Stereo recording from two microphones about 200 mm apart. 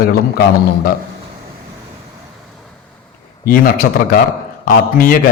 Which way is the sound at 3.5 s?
45° left (ahead or behind).